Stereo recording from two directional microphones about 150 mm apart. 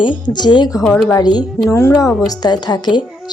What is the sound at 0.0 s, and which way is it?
A woman's voice, 30° left (ahead or behind).